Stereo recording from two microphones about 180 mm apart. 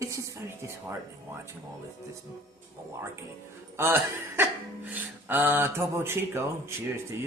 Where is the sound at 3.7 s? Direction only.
15° right (ahead or behind).